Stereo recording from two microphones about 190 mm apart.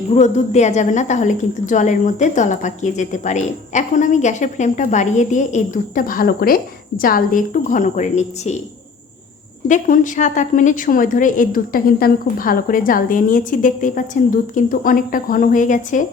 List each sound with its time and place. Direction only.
0.1 s a woman's voice: 40° left (ahead or behind)
9.6 s a woman's voice: 45° left (ahead or behind)